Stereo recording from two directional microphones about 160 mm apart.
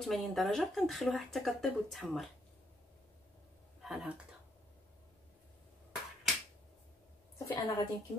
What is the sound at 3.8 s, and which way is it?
Speech, 5° right (ahead or behind).